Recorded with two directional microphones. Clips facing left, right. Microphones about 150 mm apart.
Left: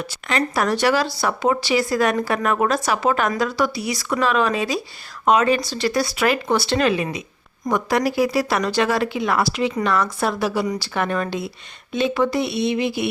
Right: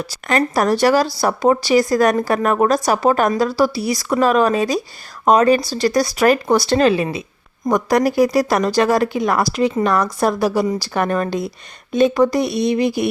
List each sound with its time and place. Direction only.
0.0 s speech: 40° right (ahead or behind)
7.7 s speech: 45° right (ahead or behind)